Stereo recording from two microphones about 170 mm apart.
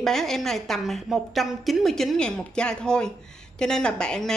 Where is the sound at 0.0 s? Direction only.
Centre (ahead or behind).